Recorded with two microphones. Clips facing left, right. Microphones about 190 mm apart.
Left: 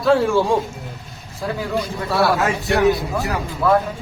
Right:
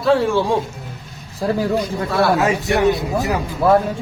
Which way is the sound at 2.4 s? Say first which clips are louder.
Right 1 dB; 20° right (ahead or behind).